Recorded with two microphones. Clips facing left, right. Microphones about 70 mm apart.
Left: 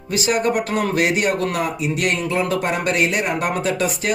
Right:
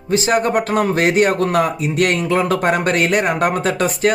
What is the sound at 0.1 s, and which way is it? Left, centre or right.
Speech, right.